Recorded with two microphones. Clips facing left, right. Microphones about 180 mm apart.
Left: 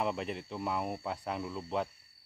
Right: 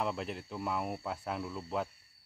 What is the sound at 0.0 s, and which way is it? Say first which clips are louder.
Speech: left 2 dB; centre (ahead or behind).